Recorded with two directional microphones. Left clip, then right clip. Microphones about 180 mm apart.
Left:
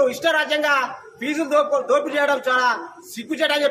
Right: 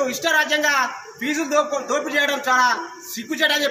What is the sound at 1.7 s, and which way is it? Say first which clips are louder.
Speech: left 4 dB; 30° left (ahead or behind).